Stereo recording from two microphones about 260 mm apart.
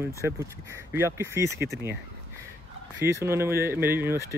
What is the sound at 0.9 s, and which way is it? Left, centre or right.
Speech, centre.